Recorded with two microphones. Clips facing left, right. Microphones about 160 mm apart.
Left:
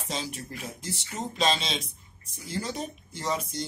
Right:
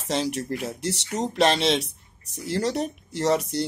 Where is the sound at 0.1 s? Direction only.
75° right (ahead or behind).